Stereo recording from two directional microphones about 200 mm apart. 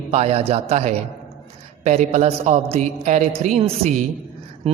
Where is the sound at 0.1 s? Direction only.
30° right (ahead or behind).